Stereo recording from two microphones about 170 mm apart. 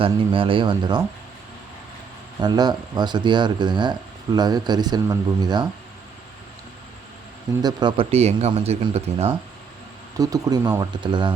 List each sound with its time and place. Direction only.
0.0 s speech: 30° right (ahead or behind)
2.4 s speech: 25° right (ahead or behind)
7.6 s speech: 25° right (ahead or behind)
10.2 s speech: 20° right (ahead or behind)